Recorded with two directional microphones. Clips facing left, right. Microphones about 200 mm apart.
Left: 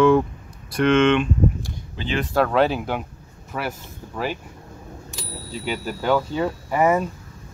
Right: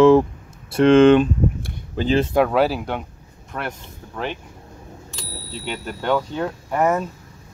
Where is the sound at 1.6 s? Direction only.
50° right (ahead or behind).